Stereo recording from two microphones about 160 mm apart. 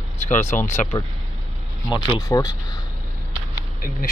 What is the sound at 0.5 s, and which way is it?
Speech, 50° left (ahead or behind).